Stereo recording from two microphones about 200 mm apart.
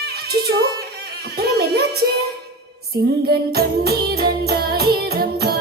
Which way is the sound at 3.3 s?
50° right (ahead or behind).